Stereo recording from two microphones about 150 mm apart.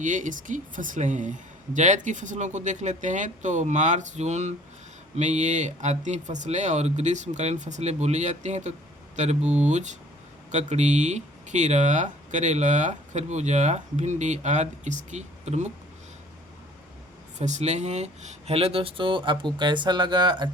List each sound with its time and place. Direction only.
0.0 s a woman's voice: 60° right (ahead or behind)
17.3 s speech: 50° right (ahead or behind); by 20.5 s 30° right (ahead or behind)